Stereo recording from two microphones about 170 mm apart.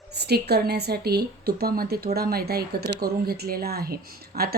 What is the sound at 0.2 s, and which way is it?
A woman's voice, 75° right (ahead or behind).